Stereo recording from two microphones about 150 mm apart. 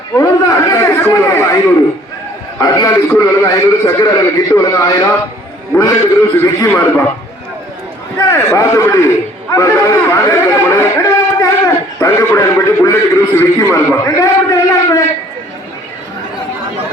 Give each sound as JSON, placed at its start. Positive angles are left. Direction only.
{"t": 0.2, "sound": "chatter", "side_deg": 20}
{"t": 2.6, "sound": "a man's voice", "side_deg": 25}
{"t": 8.3, "sound": "a man's voice", "side_deg": 20}